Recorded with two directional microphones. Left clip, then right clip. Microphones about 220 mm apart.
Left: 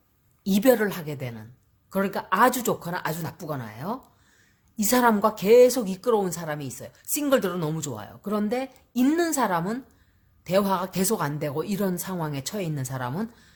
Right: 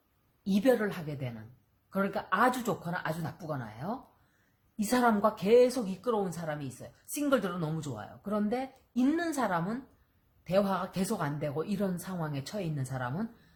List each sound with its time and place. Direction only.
0.4 s a woman's voice: 45° left (ahead or behind)